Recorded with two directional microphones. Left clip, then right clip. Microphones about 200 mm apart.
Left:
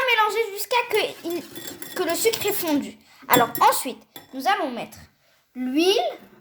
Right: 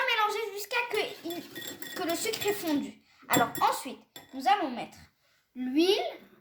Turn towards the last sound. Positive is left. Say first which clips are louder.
# left 6 dB
turn(degrees=45)  # may be behind; listen again after turning